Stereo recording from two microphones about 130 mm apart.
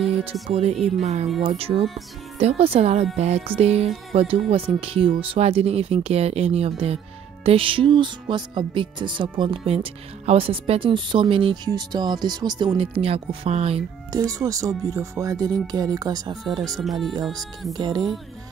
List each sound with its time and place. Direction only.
0.2 s speech: 50° right (ahead or behind)
11.7 s speech: 35° right (ahead or behind); by 13.8 s 55° right (ahead or behind)
14.1 s speech: 25° right (ahead or behind)
16.8 s speech: centre (ahead or behind)
17.7 s speech: 35° right (ahead or behind)